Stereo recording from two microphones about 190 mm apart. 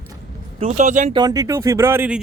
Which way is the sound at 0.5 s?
35° right (ahead or behind).